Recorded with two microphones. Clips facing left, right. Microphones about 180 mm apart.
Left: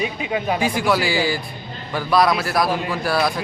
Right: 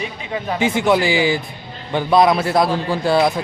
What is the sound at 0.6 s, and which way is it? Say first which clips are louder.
A man's voice: right 7 dB; 20° right (ahead or behind).